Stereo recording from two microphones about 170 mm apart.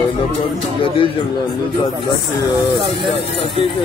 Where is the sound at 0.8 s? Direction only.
30° left (ahead or behind).